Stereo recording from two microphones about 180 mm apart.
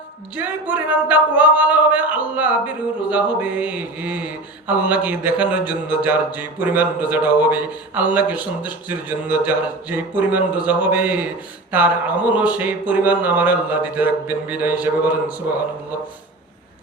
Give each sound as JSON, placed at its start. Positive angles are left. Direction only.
{"t": 0.3, "sound": "mantra", "side_deg": -10}